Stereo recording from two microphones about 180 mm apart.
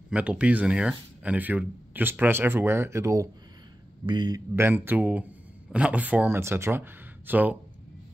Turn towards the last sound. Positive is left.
turn(degrees=-10)  # may be behind; listen again after turning